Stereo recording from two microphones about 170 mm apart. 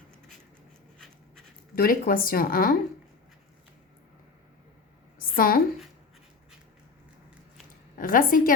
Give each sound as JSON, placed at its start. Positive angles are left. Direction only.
{"t": 1.7, "sound": "speech", "side_deg": 60}
{"t": 5.3, "sound": "a woman's voice", "side_deg": 55}
{"t": 7.9, "sound": "a woman's voice", "side_deg": 55}